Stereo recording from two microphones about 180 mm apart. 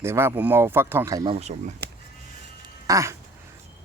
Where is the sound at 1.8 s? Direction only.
65° right (ahead or behind).